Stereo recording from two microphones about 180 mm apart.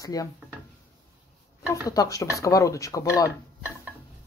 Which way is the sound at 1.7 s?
20° left (ahead or behind).